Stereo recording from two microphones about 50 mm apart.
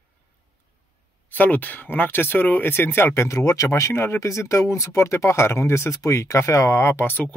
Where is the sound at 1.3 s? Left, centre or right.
Left.